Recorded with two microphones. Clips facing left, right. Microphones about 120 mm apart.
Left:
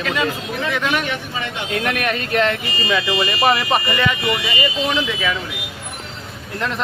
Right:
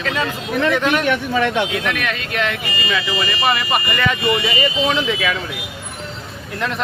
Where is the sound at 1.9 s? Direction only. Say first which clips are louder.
Left 2 dB; 45° left (ahead or behind).